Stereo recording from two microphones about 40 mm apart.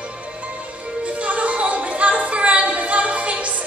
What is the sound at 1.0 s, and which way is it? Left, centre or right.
Music, right.